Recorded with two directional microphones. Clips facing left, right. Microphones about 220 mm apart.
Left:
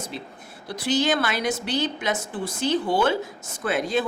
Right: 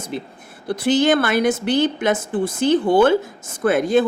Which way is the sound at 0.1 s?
55° right (ahead or behind).